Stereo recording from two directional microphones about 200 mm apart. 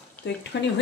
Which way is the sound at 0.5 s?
60° left (ahead or behind).